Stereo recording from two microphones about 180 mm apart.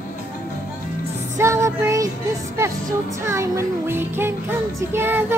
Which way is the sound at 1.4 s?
15° right (ahead or behind).